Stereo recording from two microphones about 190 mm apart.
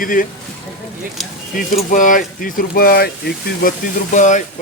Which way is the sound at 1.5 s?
45° left (ahead or behind).